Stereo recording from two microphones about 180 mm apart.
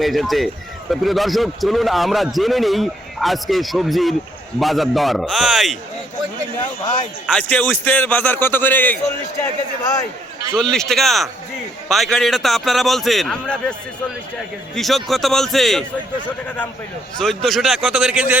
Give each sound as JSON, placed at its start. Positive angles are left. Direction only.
{"t": 0.0, "sound": "a man's voice", "side_deg": 0}
{"t": 7.3, "sound": "a man's voice", "side_deg": 5}
{"t": 9.4, "sound": "a man's voice", "side_deg": 20}
{"t": 10.5, "sound": "a man's voice", "side_deg": 5}
{"t": 14.8, "sound": "a man's voice", "side_deg": 0}
{"t": 17.2, "sound": "a man's voice", "side_deg": 0}